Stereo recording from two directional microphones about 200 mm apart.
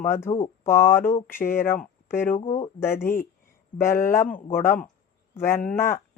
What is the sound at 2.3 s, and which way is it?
Speech, 40° left (ahead or behind).